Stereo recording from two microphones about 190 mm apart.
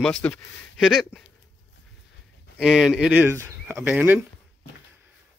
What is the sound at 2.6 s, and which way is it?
Speech, 5° right (ahead or behind).